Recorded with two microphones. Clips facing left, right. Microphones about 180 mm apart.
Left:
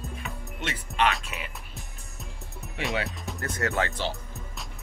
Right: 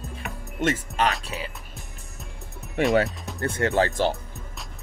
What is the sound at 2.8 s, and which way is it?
Speech, 50° right (ahead or behind).